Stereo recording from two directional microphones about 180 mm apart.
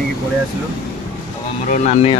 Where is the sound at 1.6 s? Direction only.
40° left (ahead or behind).